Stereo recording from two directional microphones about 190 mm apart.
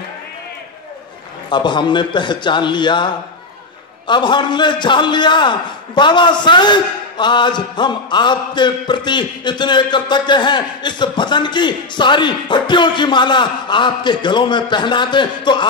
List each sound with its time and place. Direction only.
1.5 s a man's voice: 25° left (ahead or behind)
4.1 s a man's voice: 25° left (ahead or behind)